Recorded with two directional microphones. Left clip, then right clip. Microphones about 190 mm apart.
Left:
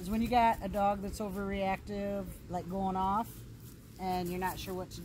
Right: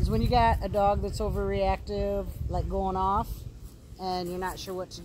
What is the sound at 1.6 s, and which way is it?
Speech, 80° left.